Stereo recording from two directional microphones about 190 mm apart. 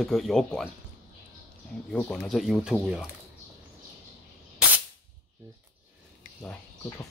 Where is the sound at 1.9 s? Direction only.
5° left (ahead or behind).